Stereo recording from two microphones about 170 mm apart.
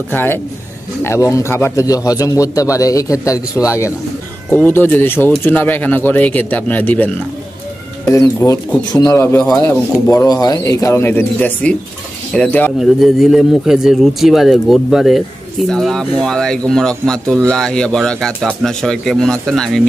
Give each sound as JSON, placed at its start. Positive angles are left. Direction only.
{"t": 0.1, "sound": "a man's voice", "side_deg": 15}
{"t": 8.4, "sound": "speech", "side_deg": 20}
{"t": 12.7, "sound": "speech", "side_deg": 0}